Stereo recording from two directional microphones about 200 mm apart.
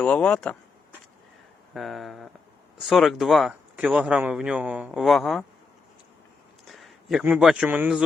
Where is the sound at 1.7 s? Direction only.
Centre (ahead or behind).